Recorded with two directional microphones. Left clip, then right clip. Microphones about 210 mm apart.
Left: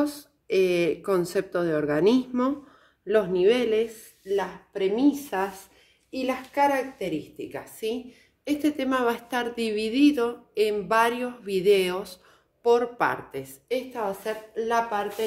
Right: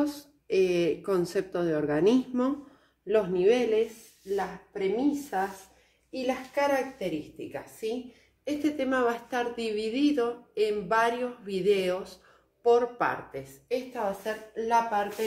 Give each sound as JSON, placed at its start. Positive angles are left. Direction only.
{"t": 0.0, "sound": "speech", "side_deg": 15}
{"t": 6.1, "sound": "a woman's voice", "side_deg": 50}